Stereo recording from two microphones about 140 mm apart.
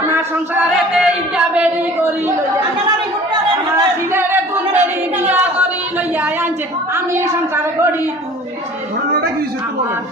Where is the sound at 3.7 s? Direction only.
15° right (ahead or behind).